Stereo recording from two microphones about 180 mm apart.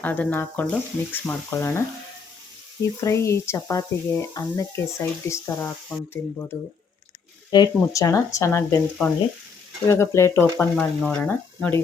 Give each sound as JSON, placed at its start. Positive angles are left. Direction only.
{"t": 0.0, "sound": "speech", "side_deg": 10}
{"t": 3.0, "sound": "speech", "side_deg": 15}
{"t": 7.5, "sound": "speech", "side_deg": 20}